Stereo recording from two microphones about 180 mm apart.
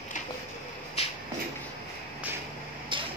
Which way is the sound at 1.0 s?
35° left (ahead or behind).